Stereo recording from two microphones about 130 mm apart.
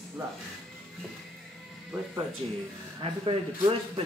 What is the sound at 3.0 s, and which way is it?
Speech, 45° right (ahead or behind).